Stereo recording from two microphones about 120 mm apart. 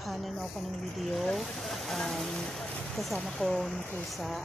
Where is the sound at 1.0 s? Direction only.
Centre (ahead or behind).